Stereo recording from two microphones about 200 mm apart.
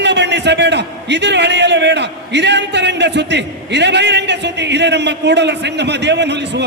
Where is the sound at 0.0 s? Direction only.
60° right (ahead or behind).